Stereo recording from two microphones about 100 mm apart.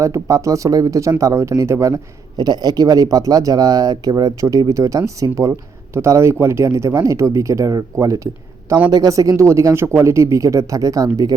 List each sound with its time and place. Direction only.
0.0 s speech: 35° right (ahead or behind)
2.4 s speech: 40° right (ahead or behind)